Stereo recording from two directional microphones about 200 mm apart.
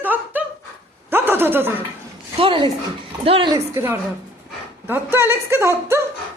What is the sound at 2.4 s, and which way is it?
A woman's voice, 25° right (ahead or behind).